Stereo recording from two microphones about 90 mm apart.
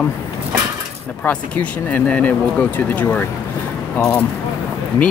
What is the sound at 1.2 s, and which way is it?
Speech, 15° left (ahead or behind).